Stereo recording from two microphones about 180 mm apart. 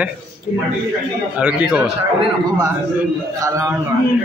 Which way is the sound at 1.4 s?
10° right (ahead or behind).